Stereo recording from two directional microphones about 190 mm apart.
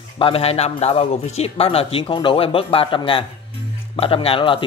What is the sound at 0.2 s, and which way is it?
A man's voice, 30° left (ahead or behind).